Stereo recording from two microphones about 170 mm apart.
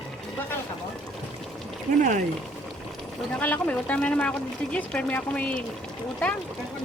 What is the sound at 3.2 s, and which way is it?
Speech, 5° left (ahead or behind).